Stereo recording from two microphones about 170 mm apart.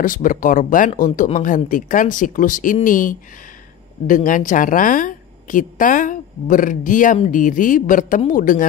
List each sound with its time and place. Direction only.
0.0 s a woman's voice: 50° left (ahead or behind)